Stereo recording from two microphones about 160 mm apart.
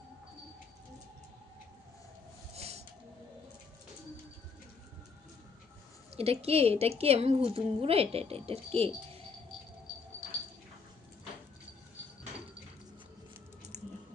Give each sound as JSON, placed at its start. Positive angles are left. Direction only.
{"t": 6.1, "sound": "a woman's voice", "side_deg": -40}
{"t": 13.7, "sound": "typing", "side_deg": -45}